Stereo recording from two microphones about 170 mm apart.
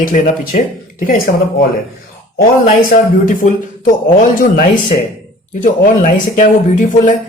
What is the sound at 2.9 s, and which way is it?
Speech, 50° left (ahead or behind).